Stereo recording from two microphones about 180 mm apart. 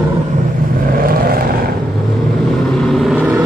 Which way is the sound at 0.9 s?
55° right (ahead or behind).